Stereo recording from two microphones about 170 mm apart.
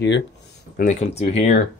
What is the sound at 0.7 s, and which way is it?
Speech, 50° left (ahead or behind).